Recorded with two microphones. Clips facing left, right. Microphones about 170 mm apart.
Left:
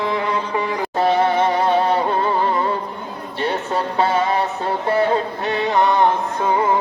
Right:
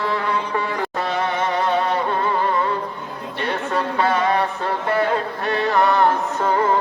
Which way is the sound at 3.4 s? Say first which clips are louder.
Left 2 dB; 25° left (ahead or behind).